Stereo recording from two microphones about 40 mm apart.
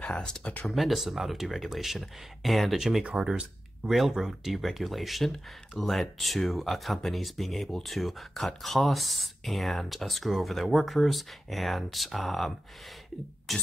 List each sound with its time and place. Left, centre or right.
0.0 s speech: left
0.7 s speech: centre
3.3 s speech: centre
4.1 s speech: centre
13.5 s speech: centre